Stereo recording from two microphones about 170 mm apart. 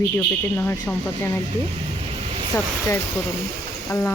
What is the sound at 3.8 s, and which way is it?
Speech, 15° left (ahead or behind).